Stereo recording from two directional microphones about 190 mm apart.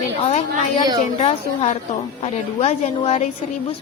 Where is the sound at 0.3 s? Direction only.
35° left (ahead or behind).